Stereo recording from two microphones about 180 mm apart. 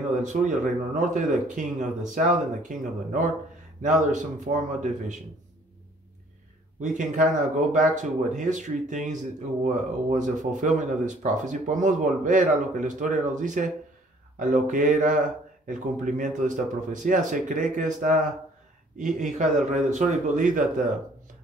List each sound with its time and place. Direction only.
0.1 s speech: 45° right (ahead or behind)
6.8 s speech: 45° right (ahead or behind)